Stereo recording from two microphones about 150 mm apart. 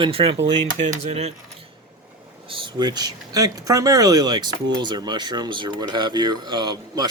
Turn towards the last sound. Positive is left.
turn(degrees=-30)  # may be behind; listen again after turning